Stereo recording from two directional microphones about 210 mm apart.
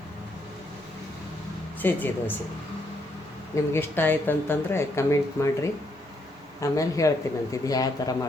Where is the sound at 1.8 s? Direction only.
10° left (ahead or behind).